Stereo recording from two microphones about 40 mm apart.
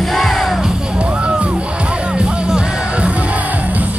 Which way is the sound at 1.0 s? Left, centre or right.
Right.